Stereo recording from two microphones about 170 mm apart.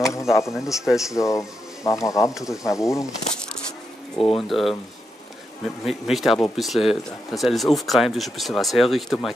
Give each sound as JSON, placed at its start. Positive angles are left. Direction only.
{"t": 0.0, "sound": "a sound", "side_deg": 20}
{"t": 0.7, "sound": "speech", "side_deg": 0}
{"t": 1.1, "sound": "speech", "side_deg": 20}
{"t": 4.4, "sound": "speech", "side_deg": 0}
{"t": 5.9, "sound": "speech", "side_deg": 0}